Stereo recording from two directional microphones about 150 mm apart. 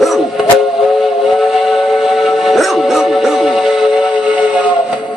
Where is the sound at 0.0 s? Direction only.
Centre (ahead or behind).